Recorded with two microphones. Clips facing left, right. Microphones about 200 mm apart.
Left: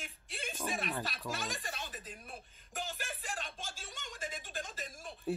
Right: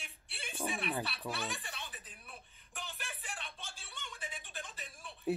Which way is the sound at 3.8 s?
40° left (ahead or behind).